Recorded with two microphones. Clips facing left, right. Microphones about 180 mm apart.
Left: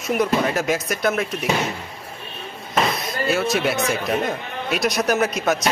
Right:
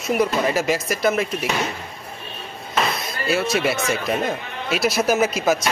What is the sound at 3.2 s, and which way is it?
Speech, centre (ahead or behind).